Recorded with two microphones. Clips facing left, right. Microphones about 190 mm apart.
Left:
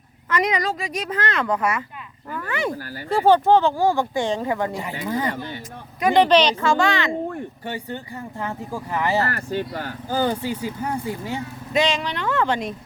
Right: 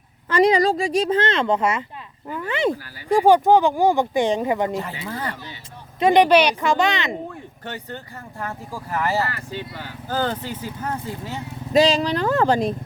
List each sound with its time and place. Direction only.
0.3 s speech: 30° right (ahead or behind)
4.7 s speech: 15° left (ahead or behind)
6.0 s speech: 20° right (ahead or behind)
6.2 s speech: 10° right (ahead or behind)
8.4 s speech: 20° left (ahead or behind)
9.2 s speech: 50° left (ahead or behind)
10.1 s speech: 10° left (ahead or behind)
11.7 s speech: 35° right (ahead or behind)